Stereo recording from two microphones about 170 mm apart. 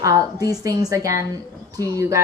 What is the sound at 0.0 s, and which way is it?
A woman's voice, 20° right (ahead or behind).